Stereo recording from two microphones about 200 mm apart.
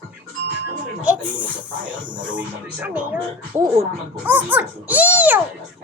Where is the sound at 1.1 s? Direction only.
5° right (ahead or behind).